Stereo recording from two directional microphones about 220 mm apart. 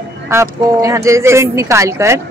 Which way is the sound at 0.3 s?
15° right (ahead or behind).